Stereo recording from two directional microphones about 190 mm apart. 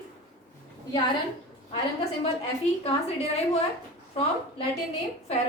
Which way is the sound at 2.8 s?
35° left (ahead or behind).